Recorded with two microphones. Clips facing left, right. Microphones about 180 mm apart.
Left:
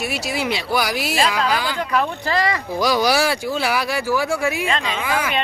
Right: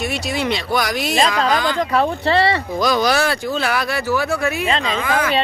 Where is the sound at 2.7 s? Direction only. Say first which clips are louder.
Left 1 dB; 10° left (ahead or behind).